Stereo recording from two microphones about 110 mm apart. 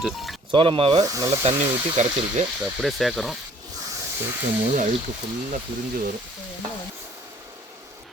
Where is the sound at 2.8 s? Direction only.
Centre (ahead or behind).